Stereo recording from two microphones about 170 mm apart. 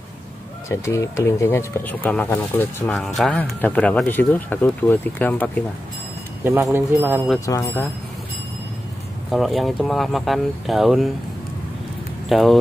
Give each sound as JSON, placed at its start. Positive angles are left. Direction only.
{"t": 0.7, "sound": "speech", "side_deg": 15}
{"t": 6.4, "sound": "speech", "side_deg": -15}
{"t": 7.3, "sound": "speech", "side_deg": 20}
{"t": 9.3, "sound": "speech", "side_deg": 0}
{"t": 12.3, "sound": "speech", "side_deg": 0}